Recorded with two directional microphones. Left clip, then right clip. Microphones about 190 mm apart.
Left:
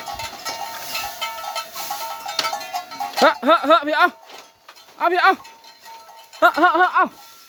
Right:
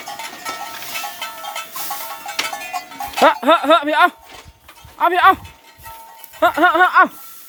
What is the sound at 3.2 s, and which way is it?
Speech, 20° left (ahead or behind).